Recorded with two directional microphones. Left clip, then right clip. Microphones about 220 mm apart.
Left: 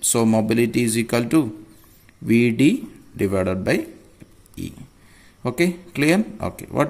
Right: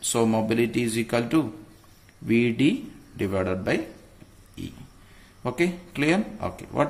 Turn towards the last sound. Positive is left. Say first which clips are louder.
# left 3 dB
turn(degrees=40)  # may be behind; listen again after turning